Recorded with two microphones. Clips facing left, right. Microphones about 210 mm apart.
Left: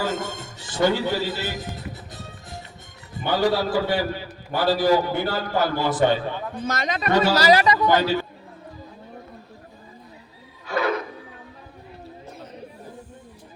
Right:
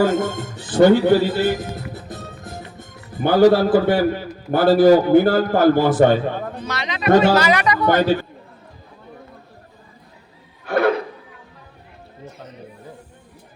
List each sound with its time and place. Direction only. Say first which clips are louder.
0.0 s music: right 9 dB; 55° right (ahead or behind)
3.2 s a man's voice: right 9 dB; 45° right (ahead or behind)
6.7 s speech: left 3 dB; 45° left (ahead or behind)
7.3 s speech: even; 35° left (ahead or behind)
7.9 s a man's voice: right 7 dB; 50° right (ahead or behind)
10.7 s a sound: right 7 dB; 60° right (ahead or behind)